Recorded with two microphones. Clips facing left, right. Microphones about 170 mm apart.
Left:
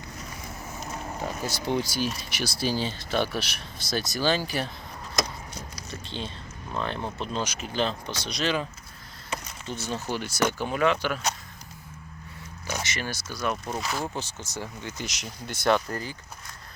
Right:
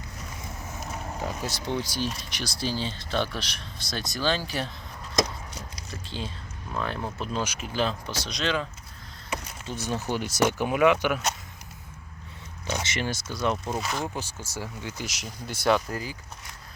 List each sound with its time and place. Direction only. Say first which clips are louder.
0.7 s a sound: left 1 dB; centre (ahead or behind)
1.7 s speech: left 3 dB; 10° left (ahead or behind)
6.1 s speech: right 1 dB; 5° right (ahead or behind)
9.3 s speech: right 1 dB; 10° right (ahead or behind)
12.8 s speech: right 3 dB; 25° right (ahead or behind)
13.7 s speech: right 1 dB; centre (ahead or behind)
14.2 s speech: even; 10° right (ahead or behind)